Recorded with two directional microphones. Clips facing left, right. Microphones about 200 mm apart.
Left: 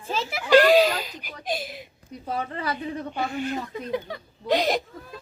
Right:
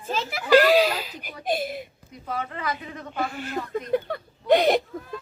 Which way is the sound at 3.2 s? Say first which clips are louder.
Left 1 dB; centre (ahead or behind).